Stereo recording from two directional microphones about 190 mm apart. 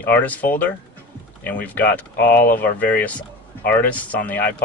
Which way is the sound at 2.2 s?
55° left (ahead or behind).